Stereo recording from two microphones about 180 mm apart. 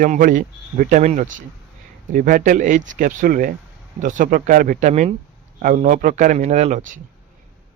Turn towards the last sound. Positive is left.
turn(degrees=-45)  # may be behind; listen again after turning